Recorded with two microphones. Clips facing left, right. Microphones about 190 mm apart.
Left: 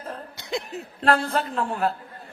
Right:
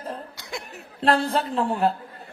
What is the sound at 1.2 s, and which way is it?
Speech, 35° right (ahead or behind).